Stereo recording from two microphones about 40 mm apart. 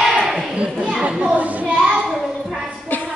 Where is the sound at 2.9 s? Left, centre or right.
Left.